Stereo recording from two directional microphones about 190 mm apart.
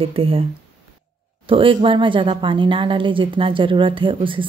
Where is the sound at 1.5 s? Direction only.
25° right (ahead or behind).